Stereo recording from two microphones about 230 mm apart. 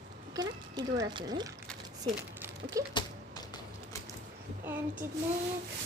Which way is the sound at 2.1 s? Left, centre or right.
Centre.